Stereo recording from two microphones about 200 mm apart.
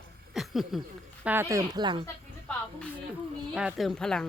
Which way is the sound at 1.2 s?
10° right (ahead or behind).